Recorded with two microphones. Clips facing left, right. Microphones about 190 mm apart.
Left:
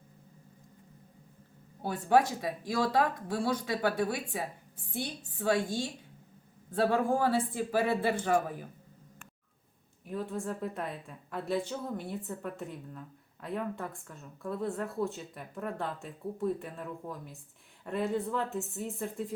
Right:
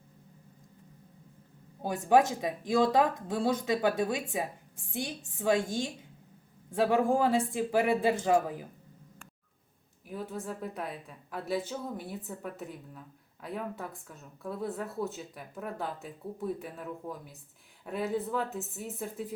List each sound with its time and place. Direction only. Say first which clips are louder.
1.8 s speech: right 2 dB; 20° right (ahead or behind)
10.1 s a woman's voice: left 2 dB; centre (ahead or behind)